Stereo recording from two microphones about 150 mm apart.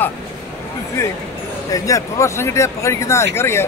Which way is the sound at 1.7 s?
20° left (ahead or behind).